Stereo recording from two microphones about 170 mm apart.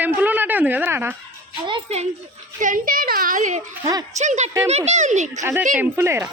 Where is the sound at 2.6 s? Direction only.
50° right (ahead or behind).